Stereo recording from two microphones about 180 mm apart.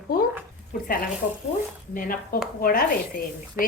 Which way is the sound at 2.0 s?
50° left (ahead or behind).